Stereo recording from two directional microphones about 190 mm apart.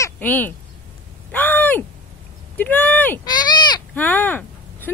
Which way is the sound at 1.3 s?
10° left (ahead or behind).